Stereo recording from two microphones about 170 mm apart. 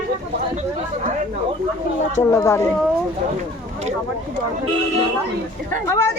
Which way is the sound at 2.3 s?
20° left (ahead or behind).